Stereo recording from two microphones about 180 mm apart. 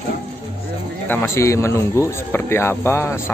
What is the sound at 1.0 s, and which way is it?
Speech, 10° left (ahead or behind).